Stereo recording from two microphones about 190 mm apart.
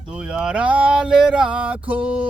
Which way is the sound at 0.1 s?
5° right (ahead or behind).